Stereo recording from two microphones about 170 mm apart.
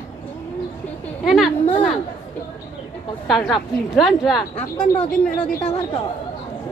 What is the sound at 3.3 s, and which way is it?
Speech, centre (ahead or behind).